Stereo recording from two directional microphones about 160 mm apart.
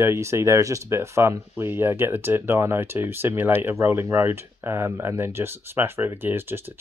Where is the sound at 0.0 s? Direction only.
15° right (ahead or behind).